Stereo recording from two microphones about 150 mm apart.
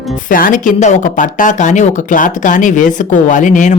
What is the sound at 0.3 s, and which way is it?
Speech, 65° left (ahead or behind).